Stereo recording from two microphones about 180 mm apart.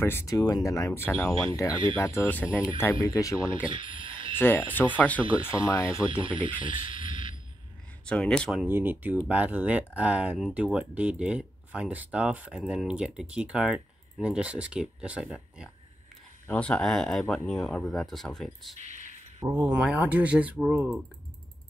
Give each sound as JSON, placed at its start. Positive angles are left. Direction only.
{"t": 0.0, "sound": "speech", "side_deg": 15}
{"t": 3.7, "sound": "a sound", "side_deg": -30}
{"t": 4.4, "sound": "speech", "side_deg": 10}
{"t": 6.6, "sound": "a sound", "side_deg": -30}
{"t": 8.0, "sound": "speech", "side_deg": 5}
{"t": 8.6, "sound": "speech", "side_deg": -10}
{"t": 19.4, "sound": "speech", "side_deg": -10}